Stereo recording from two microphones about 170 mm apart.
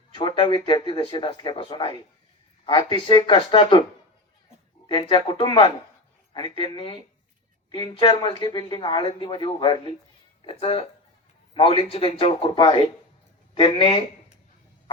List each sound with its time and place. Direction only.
0.1 s speech: 25° left (ahead or behind)
4.9 s a man's voice: 30° left (ahead or behind)